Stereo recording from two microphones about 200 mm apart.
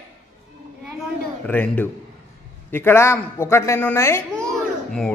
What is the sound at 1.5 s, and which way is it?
A man's voice, 10° left (ahead or behind).